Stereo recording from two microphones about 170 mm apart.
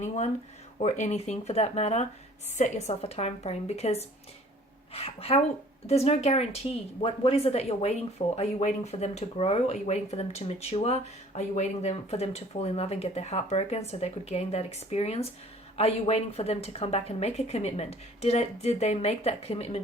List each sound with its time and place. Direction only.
0.8 s speech: 40° left (ahead or behind)